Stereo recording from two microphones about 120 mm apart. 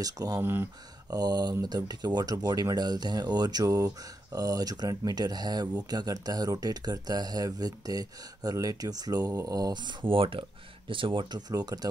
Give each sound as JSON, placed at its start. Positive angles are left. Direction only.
{"t": 0.0, "sound": "speech", "side_deg": -30}
{"t": 0.4, "sound": "speech", "side_deg": -20}
{"t": 1.1, "sound": "speech", "side_deg": -35}